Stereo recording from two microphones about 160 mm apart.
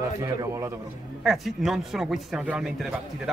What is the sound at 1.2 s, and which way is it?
A man's voice, centre (ahead or behind).